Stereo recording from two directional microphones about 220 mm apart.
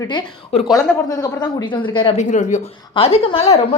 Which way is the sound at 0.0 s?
20° left (ahead or behind).